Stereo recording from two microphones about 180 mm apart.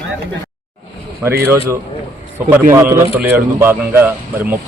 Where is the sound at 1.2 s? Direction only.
15° right (ahead or behind).